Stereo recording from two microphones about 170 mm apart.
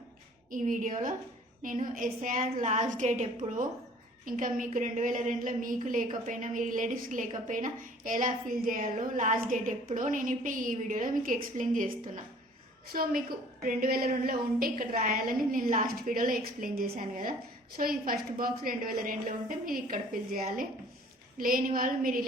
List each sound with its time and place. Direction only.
0.5 s a woman's voice: 50° right (ahead or behind)
2.4 s a woman's voice: 40° right (ahead or behind)